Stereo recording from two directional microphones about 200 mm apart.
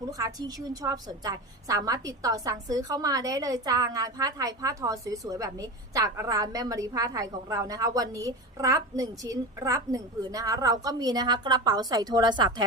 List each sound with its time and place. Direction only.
0.1 s a woman's voice: 15° right (ahead or behind)